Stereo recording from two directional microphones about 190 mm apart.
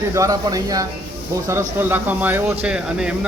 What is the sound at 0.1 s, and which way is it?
Speech, 15° right (ahead or behind).